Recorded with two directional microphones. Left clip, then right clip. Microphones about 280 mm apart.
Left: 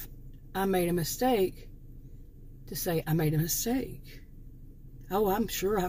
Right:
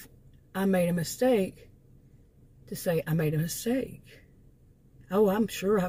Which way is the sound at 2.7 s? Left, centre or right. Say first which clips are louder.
Right 2 dB; centre.